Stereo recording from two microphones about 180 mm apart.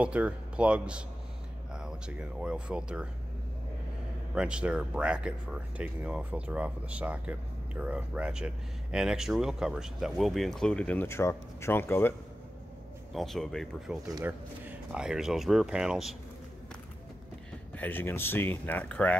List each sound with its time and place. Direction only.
0.0 s speech: 5° right (ahead or behind)
4.4 s speech: 5° right (ahead or behind); by 12.1 s 10° left (ahead or behind)
13.1 s speech: centre (ahead or behind)
14.0 s speech: 15° right (ahead or behind)
17.7 s speech: 10° left (ahead or behind)